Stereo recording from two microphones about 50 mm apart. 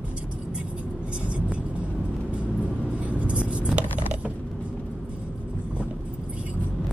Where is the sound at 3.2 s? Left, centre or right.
Right.